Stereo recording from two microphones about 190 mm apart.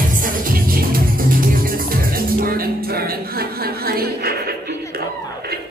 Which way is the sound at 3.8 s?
55° right (ahead or behind).